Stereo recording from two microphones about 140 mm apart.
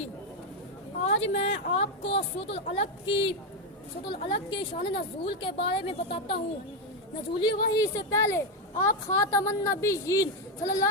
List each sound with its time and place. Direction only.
1.0 s a woman's voice: 45° left (ahead or behind)
7.3 s a woman's voice: 30° left (ahead or behind)